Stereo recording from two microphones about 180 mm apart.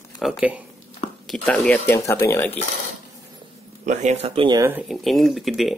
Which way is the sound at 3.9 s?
40° right (ahead or behind).